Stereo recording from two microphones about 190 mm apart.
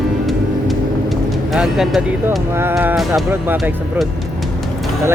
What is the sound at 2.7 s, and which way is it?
Speech, centre (ahead or behind).